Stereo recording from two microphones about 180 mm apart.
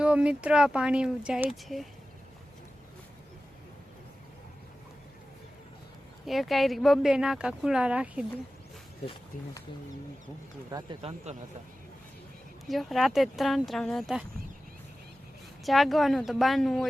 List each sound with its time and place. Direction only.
0.0 s speech: 5° right (ahead or behind)
6.2 s speech: centre (ahead or behind)
10.7 s speech: 20° right (ahead or behind)
12.6 s speech: centre (ahead or behind)
15.6 s speech: centre (ahead or behind)